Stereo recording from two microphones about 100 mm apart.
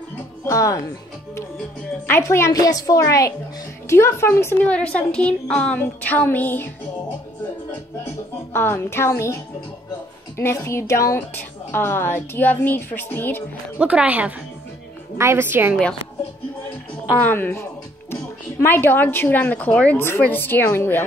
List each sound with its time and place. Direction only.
0.5 s a woman's voice: 35° left (ahead or behind)
2.0 s a woman's voice: 25° left (ahead or behind)
4.6 s a woman's voice: 10° left (ahead or behind)
8.5 s a woman's voice: 25° left (ahead or behind)
13.7 s speech: 10° right (ahead or behind)
15.1 s a woman's voice: 25° right (ahead or behind)
17.2 s a woman's voice: 20° left (ahead or behind)